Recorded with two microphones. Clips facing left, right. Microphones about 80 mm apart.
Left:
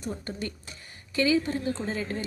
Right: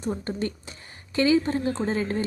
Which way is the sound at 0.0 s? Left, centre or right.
Right.